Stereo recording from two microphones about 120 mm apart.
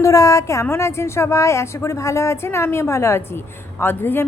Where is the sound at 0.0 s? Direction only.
25° left (ahead or behind).